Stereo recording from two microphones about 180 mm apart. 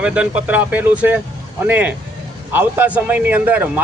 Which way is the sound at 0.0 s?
5° right (ahead or behind).